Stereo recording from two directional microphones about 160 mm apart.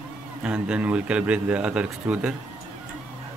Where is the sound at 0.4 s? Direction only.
5° right (ahead or behind).